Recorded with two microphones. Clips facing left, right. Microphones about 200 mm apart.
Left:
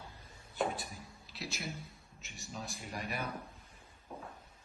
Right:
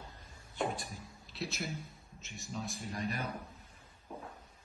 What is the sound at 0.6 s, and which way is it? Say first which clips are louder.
Speech: left 1 dB; centre (ahead or behind).